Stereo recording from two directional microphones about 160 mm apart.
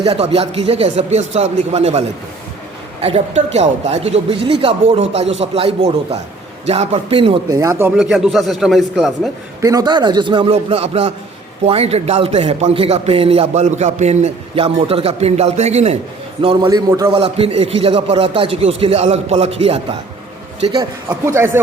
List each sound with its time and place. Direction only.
0.0 s a man's voice: 35° right (ahead or behind)
7.5 s a man's voice: 20° right (ahead or behind)
7.9 s a man's voice: 5° right (ahead or behind)
9.6 s a man's voice: 20° right (ahead or behind); by 16.0 s 40° right (ahead or behind)
16.4 s a man's voice: 30° right (ahead or behind)
17.1 s a man's voice: 35° right (ahead or behind)
21.1 s speech: 15° right (ahead or behind)